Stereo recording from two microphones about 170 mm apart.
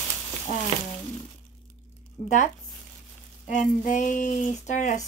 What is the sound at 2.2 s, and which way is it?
Speech, 45° left (ahead or behind).